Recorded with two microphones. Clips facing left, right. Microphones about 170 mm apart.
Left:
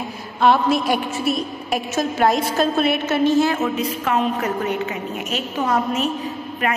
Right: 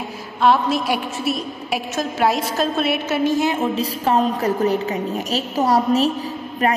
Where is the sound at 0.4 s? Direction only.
Centre (ahead or behind).